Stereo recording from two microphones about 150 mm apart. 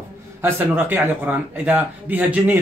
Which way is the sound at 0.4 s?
15° right (ahead or behind).